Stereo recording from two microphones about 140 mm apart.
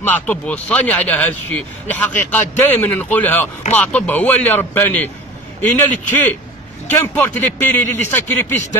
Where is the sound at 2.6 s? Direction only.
15° left (ahead or behind).